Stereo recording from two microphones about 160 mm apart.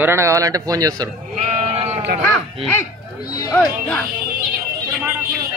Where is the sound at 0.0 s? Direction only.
20° right (ahead or behind).